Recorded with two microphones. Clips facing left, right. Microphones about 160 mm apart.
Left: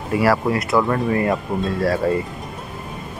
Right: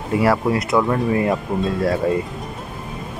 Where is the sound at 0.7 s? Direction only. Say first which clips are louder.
Even; centre (ahead or behind).